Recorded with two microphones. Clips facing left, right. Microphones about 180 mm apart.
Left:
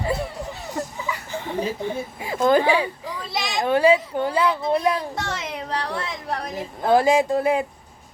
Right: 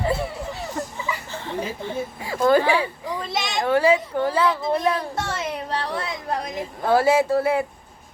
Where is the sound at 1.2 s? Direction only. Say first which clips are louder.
Left 3 dB; 15° left (ahead or behind).